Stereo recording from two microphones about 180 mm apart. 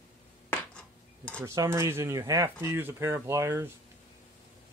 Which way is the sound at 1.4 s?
15° right (ahead or behind).